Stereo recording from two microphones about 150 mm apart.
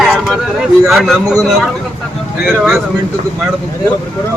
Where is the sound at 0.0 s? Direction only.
Centre (ahead or behind).